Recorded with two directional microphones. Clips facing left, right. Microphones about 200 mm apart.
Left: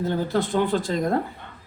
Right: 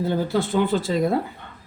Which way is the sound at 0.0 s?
10° right (ahead or behind).